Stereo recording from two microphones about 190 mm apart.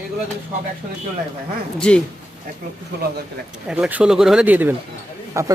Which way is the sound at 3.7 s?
5° right (ahead or behind).